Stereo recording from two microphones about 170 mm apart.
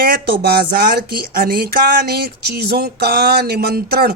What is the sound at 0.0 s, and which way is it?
Speech, 60° right (ahead or behind).